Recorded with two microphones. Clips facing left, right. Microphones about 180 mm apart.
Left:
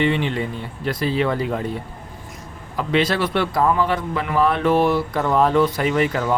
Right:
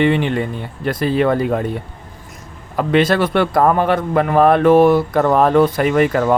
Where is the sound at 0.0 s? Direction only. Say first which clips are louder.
Right 5 dB; 55° right (ahead or behind).